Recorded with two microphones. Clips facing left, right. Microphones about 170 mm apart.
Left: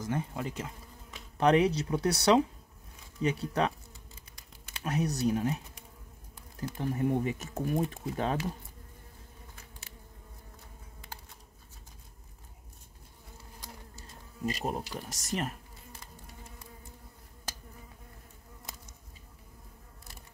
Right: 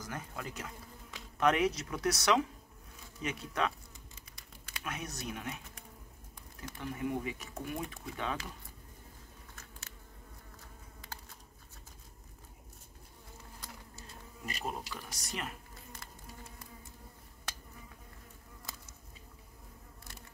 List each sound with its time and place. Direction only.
0.0 s speech: 25° left (ahead or behind)
4.8 s speech: 35° left (ahead or behind)
6.6 s speech: 35° left (ahead or behind)
14.4 s speech: 35° left (ahead or behind)